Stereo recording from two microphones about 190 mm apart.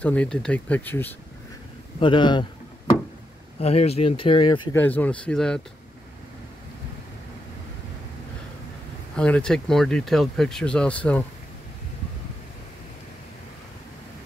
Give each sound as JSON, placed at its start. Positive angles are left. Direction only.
{"t": 0.0, "sound": "speech", "side_deg": 5}
{"t": 2.0, "sound": "a man's voice", "side_deg": 25}
{"t": 3.5, "sound": "speech", "side_deg": 30}
{"t": 4.7, "sound": "speech", "side_deg": 10}
{"t": 9.1, "sound": "speech", "side_deg": 5}